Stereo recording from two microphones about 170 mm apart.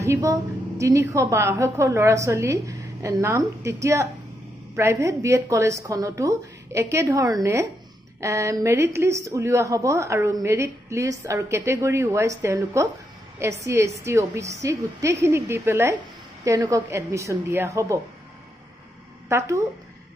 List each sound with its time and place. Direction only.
0.0 s a woman's voice: 20° right (ahead or behind)
19.2 s speech: 15° right (ahead or behind)